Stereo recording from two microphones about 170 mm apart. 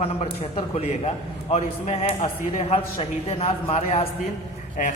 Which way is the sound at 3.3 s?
35° left (ahead or behind).